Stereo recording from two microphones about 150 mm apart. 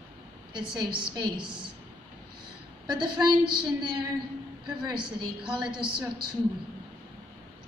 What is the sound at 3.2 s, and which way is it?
A woman's voice, 30° right (ahead or behind).